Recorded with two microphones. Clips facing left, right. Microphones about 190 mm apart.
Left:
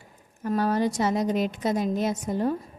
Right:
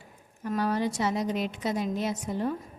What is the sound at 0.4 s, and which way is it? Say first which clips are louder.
Speech: left 4 dB; 45° left (ahead or behind).